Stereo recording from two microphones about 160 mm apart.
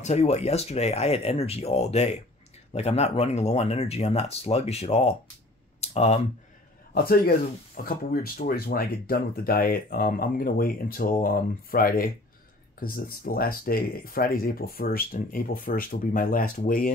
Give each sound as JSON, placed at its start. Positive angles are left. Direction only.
{"t": 0.0, "sound": "speech", "side_deg": 45}
{"t": 5.8, "sound": "a sound", "side_deg": 40}
{"t": 6.9, "sound": "speech", "side_deg": 70}